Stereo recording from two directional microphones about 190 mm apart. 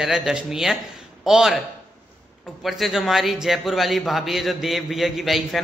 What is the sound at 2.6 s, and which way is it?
A man's voice, centre (ahead or behind).